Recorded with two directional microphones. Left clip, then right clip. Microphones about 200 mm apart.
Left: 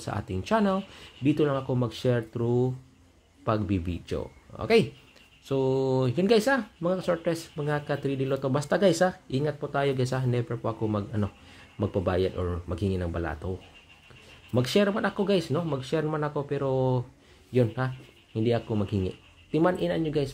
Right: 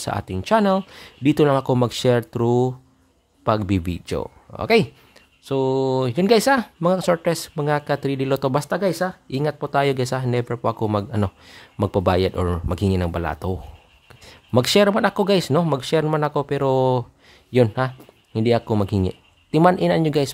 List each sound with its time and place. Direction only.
0.0 s speech: 30° right (ahead or behind)
8.6 s speech: 20° right (ahead or behind)
9.3 s speech: 40° right (ahead or behind)
14.5 s speech: 40° right (ahead or behind)